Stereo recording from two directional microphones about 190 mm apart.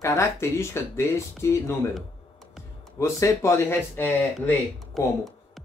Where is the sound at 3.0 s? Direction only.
15° left (ahead or behind).